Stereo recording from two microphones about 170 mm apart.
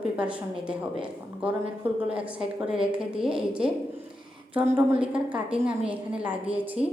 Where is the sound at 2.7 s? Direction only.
5° right (ahead or behind).